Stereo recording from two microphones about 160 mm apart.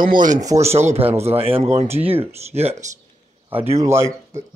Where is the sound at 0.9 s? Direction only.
40° right (ahead or behind).